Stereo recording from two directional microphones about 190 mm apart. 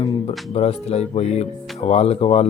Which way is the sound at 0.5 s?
30° left (ahead or behind).